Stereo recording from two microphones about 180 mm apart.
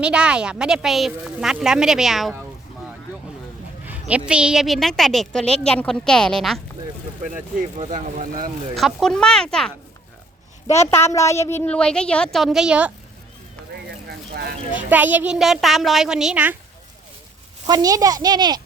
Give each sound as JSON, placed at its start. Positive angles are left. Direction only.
{"t": 0.0, "sound": "a woman's voice", "side_deg": -5}
{"t": 4.3, "sound": "a woman's voice", "side_deg": -5}
{"t": 7.8, "sound": "speech", "side_deg": -40}
{"t": 8.7, "sound": "a woman's voice", "side_deg": 0}
{"t": 10.7, "sound": "a woman's voice", "side_deg": 15}
{"t": 13.7, "sound": "a sound", "side_deg": -65}
{"t": 14.8, "sound": "a woman's voice", "side_deg": -10}
{"t": 17.7, "sound": "a child's voice", "side_deg": -20}